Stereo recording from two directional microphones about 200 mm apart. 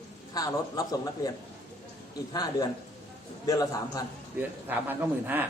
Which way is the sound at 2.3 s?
20° left (ahead or behind).